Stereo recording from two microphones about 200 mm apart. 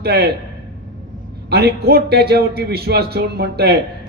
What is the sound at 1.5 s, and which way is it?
A man's voice, 50° right (ahead or behind).